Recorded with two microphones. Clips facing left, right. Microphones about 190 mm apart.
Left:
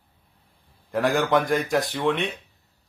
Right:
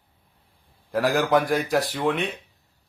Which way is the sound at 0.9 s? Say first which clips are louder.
Right 1 dB; centre (ahead or behind).